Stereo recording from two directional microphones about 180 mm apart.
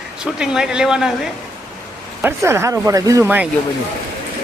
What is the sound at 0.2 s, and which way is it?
Speech, 5° right (ahead or behind).